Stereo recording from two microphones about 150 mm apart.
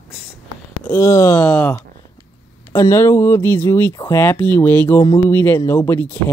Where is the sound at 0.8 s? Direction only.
20° left (ahead or behind).